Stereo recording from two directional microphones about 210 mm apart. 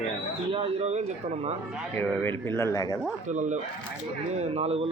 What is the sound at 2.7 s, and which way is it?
Speech, 15° left (ahead or behind).